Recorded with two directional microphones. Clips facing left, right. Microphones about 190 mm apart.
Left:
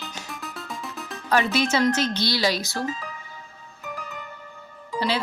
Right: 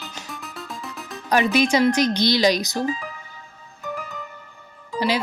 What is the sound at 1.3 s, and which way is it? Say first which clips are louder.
A woman's voice: right 3 dB; 15° right (ahead or behind).